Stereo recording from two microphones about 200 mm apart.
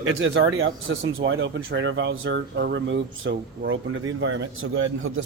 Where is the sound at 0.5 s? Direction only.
80° right.